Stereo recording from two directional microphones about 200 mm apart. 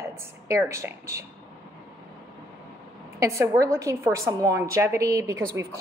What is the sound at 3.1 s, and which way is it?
A woman's voice, 15° right (ahead or behind).